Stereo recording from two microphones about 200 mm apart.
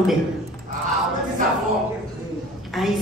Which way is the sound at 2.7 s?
Centre (ahead or behind).